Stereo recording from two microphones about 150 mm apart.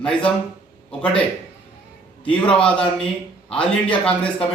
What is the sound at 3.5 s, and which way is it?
Speech, 35° left (ahead or behind).